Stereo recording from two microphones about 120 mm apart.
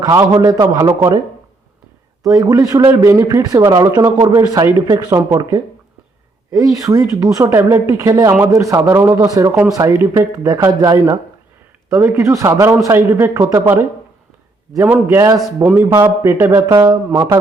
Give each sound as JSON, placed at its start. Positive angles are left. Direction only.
{"t": 0.0, "sound": "a man's voice", "side_deg": -30}
{"t": 2.3, "sound": "a man's voice", "side_deg": -30}